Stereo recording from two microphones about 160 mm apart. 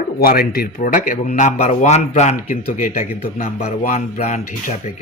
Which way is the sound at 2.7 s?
55° left (ahead or behind).